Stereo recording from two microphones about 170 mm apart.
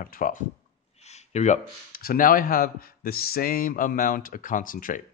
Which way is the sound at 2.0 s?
60° left (ahead or behind).